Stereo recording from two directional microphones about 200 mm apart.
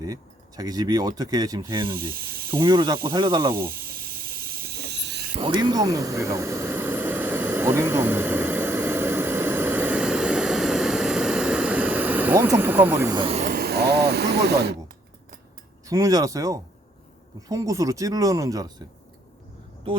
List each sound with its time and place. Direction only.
0.0 s speech: 20° right (ahead or behind)
2.0 s snake: 45° right (ahead or behind)
2.6 s speech: 20° right (ahead or behind)
3.5 s snake: 50° right (ahead or behind)
5.4 s vehicle: 25° right (ahead or behind)
13.1 s speech: 30° right (ahead or behind)
13.6 s a sound: 50° right (ahead or behind)
15.9 s speech: 15° right (ahead or behind)